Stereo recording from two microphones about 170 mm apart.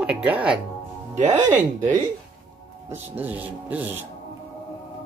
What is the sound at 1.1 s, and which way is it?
Speech, 45° right (ahead or behind).